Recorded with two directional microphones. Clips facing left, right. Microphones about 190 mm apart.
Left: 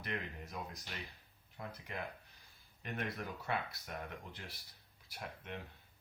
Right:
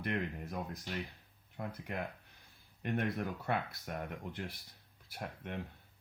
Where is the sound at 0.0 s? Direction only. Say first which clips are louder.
Right 6 dB; 55° right (ahead or behind).